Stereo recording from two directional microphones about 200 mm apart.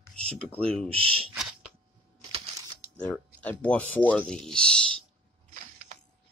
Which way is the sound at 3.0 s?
5° left (ahead or behind).